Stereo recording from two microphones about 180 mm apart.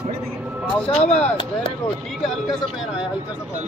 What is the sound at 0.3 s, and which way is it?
Vehicle, 5° right (ahead or behind).